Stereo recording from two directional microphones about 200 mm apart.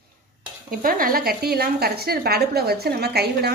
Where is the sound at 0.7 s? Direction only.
45° right (ahead or behind).